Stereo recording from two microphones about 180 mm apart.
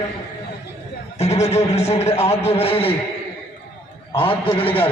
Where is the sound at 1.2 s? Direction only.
35° left (ahead or behind).